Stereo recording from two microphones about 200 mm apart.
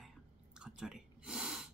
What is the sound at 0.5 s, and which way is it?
Whispering, 5° right (ahead or behind).